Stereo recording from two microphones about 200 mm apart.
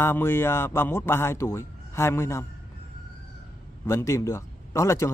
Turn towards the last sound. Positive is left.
turn(degrees=15)  # may be behind; listen again after turning